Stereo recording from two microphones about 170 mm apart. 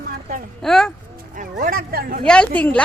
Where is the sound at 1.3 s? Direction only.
50° right (ahead or behind).